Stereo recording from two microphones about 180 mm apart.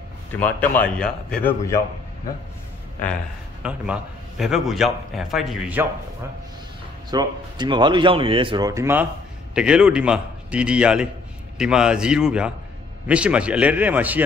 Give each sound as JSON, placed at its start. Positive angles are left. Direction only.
{"t": 0.4, "sound": "speech", "side_deg": 10}
{"t": 3.6, "sound": "a man's voice", "side_deg": -5}
{"t": 7.1, "sound": "a man's voice", "side_deg": -25}